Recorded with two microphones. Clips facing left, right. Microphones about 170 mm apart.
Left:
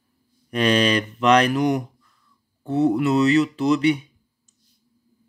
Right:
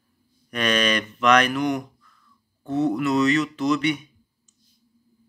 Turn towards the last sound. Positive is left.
turn(degrees=30)  # may be behind; listen again after turning